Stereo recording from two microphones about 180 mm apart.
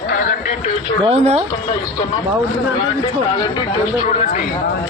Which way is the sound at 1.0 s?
35° right (ahead or behind).